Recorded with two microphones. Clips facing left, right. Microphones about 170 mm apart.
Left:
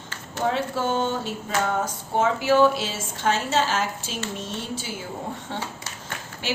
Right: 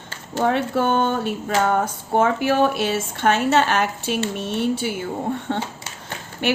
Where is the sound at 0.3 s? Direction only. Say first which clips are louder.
Right 5 dB; 60° right (ahead or behind).